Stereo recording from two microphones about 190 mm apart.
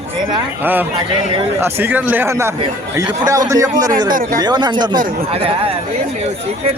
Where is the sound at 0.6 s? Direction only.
10° right (ahead or behind).